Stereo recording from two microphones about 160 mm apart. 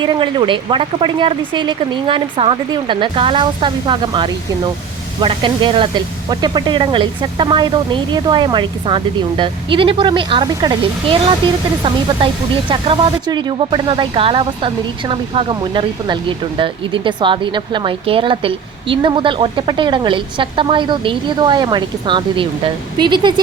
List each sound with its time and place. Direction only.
0.0 s speech: 30° right (ahead or behind)